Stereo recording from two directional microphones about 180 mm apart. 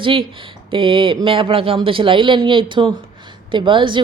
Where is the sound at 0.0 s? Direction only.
30° right (ahead or behind).